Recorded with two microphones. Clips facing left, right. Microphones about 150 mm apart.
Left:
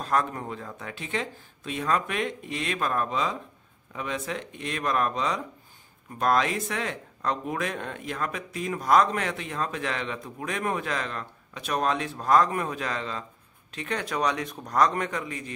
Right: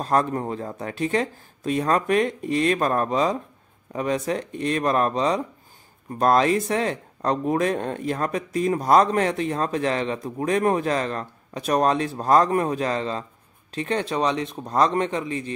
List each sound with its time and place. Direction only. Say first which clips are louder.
0.0 s speech: right 5 dB; 35° right (ahead or behind)